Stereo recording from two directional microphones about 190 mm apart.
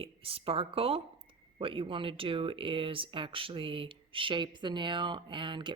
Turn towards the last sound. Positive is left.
turn(degrees=-25)  # may be behind; listen again after turning